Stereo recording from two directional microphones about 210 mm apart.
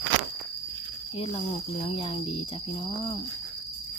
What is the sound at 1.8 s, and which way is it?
Speech, 25° left (ahead or behind).